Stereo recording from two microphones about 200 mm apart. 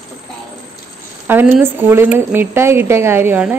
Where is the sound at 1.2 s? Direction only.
10° right (ahead or behind).